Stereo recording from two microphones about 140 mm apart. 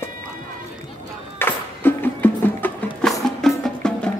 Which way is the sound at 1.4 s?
15° left (ahead or behind).